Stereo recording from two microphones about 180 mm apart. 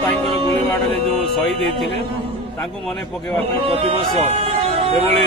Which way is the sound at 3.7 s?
30° right (ahead or behind).